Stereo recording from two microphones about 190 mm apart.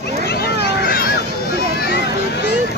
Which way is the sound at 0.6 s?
50° left (ahead or behind).